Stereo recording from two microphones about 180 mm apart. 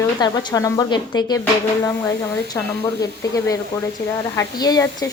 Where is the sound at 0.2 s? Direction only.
20° left (ahead or behind).